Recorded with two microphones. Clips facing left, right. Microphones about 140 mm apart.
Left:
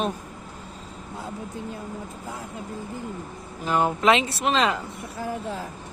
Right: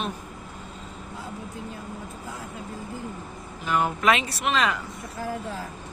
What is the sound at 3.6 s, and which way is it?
Speech, 30° left (ahead or behind).